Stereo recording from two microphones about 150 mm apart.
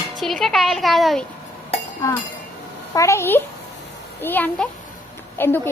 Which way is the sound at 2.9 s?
20° left (ahead or behind).